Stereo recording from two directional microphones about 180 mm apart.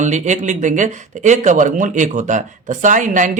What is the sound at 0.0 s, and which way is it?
Speech, 40° right (ahead or behind).